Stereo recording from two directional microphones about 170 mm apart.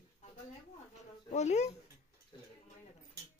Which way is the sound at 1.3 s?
40° left (ahead or behind).